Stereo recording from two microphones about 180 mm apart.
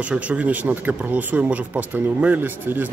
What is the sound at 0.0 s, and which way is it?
Speech, 5° right (ahead or behind).